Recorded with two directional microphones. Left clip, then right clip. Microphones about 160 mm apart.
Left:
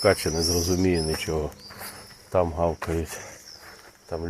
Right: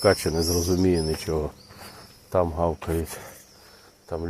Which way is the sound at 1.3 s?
15° right (ahead or behind).